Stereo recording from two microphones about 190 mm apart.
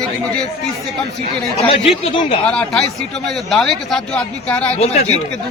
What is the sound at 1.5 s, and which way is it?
Speech, 30° left (ahead or behind).